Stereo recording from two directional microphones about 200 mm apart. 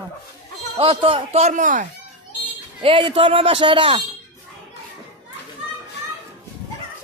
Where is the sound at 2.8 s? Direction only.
25° right (ahead or behind).